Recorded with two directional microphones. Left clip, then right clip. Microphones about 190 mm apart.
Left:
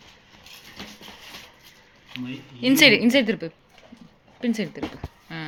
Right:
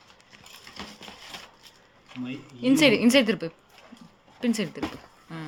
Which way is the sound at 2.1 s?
5° right (ahead or behind).